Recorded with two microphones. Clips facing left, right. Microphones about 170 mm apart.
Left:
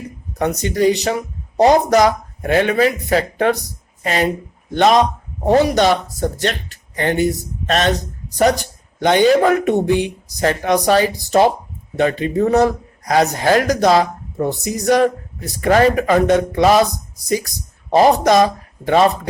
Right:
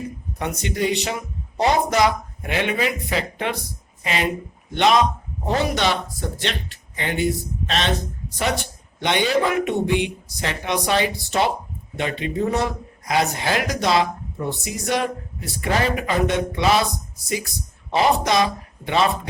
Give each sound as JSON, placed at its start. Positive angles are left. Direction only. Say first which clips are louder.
{"t": 0.3, "sound": "speech", "louder": "left 8 dB", "side_deg": 40}